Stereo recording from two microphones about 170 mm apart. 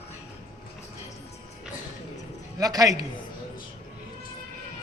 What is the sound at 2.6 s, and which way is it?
Speech, 20° right (ahead or behind).